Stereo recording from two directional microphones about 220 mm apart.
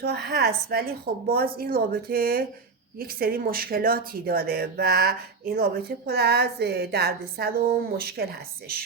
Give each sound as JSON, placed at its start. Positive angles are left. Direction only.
{"t": 0.0, "sound": "speech", "side_deg": -50}